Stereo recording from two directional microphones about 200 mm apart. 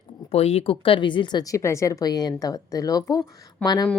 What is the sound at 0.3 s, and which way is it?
Speech, 30° left (ahead or behind).